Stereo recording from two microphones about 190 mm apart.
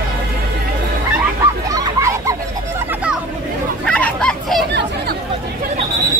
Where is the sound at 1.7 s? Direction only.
15° right (ahead or behind).